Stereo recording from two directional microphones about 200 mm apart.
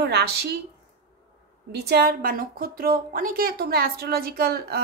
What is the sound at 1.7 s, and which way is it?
A woman's voice, 50° right (ahead or behind).